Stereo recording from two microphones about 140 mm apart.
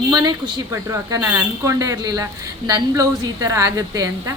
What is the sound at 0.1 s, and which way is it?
A woman's voice, 30° right (ahead or behind).